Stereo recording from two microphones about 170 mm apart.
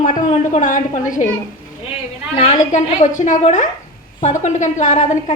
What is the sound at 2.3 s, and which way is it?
Speech, 35° left (ahead or behind).